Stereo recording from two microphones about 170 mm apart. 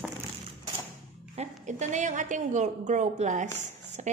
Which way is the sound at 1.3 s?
45° right (ahead or behind).